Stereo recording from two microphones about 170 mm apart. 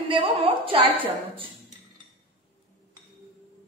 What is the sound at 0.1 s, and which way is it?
Speech, 30° right (ahead or behind).